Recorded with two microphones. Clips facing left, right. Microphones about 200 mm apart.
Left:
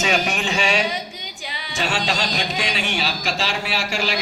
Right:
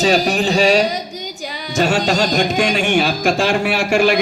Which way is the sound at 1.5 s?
45° right (ahead or behind).